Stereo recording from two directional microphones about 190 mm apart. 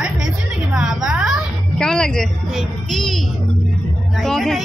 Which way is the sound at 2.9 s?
Centre (ahead or behind).